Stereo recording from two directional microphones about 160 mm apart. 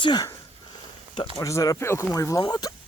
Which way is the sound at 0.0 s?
25° left (ahead or behind).